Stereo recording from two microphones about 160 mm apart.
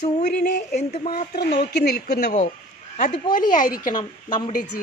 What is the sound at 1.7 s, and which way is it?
Speech, 70° left (ahead or behind).